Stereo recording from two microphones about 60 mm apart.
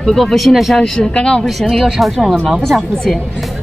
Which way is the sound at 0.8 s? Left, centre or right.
Centre.